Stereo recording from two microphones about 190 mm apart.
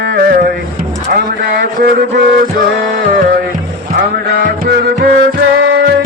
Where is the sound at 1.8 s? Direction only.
60° right (ahead or behind).